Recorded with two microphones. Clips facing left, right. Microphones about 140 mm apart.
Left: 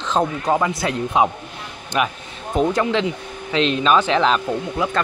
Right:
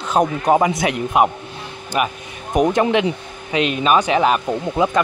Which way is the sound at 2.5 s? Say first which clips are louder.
Right 3 dB; 15° right (ahead or behind).